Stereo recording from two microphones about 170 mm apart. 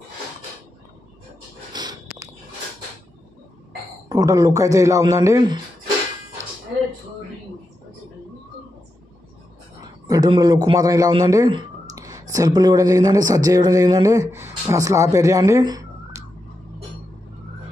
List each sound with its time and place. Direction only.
1.7 s a sound: 25° right (ahead or behind)
4.1 s a man's voice: 20° right (ahead or behind)
10.0 s a man's voice: 20° right (ahead or behind)